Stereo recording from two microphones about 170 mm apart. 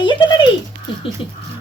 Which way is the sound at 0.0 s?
25° left (ahead or behind).